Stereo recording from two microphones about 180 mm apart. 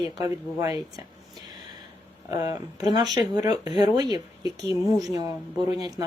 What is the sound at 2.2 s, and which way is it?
Speech, 20° right (ahead or behind).